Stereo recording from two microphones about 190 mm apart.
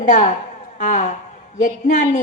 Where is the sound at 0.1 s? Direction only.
40° left (ahead or behind).